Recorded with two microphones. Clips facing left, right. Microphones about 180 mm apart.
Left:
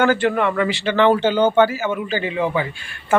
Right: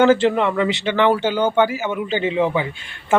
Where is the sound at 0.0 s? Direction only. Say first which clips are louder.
Right 3 dB; 20° right (ahead or behind).